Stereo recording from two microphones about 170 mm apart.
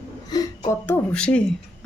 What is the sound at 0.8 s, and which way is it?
Speech, 10° left (ahead or behind).